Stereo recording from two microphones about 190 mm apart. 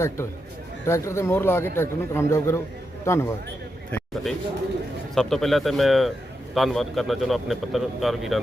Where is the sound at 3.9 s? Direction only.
Centre (ahead or behind).